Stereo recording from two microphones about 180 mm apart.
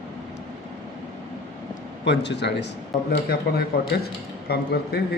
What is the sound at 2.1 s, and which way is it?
Speech, 75° left (ahead or behind).